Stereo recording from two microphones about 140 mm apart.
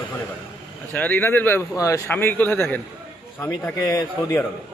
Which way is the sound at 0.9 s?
10° left (ahead or behind).